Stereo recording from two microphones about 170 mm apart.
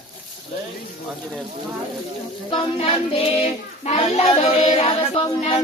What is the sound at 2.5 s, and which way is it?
Child singing, 35° left (ahead or behind).